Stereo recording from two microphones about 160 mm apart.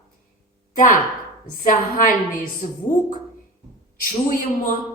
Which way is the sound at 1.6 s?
55° left (ahead or behind).